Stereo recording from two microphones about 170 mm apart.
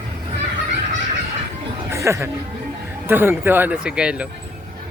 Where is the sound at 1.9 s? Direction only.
15° right (ahead or behind).